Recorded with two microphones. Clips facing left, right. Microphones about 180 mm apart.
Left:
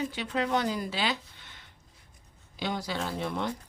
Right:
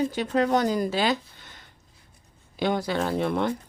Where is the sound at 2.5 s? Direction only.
55° right (ahead or behind).